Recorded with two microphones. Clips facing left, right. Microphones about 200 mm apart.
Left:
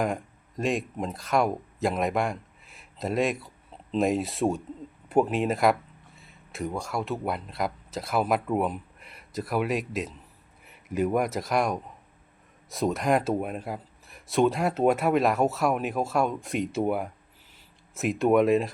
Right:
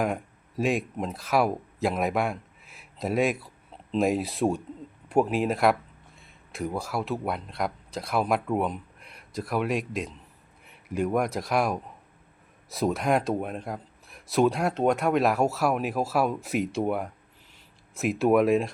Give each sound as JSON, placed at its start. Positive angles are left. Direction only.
{"t": 0.0, "sound": "speech", "side_deg": 0}